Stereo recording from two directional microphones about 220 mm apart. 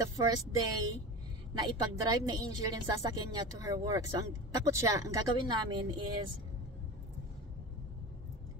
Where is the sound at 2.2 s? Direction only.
15° right (ahead or behind).